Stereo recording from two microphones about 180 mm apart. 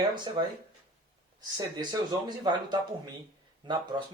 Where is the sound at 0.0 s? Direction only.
25° right (ahead or behind).